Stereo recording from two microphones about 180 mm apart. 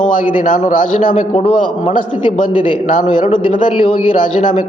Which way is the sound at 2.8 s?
45° left (ahead or behind).